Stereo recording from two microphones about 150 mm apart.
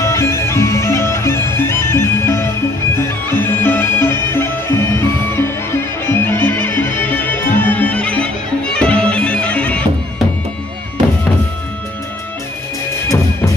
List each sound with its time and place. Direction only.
0.0 s bagpipes: 20° left (ahead or behind)
8.7 s music: 5° left (ahead or behind)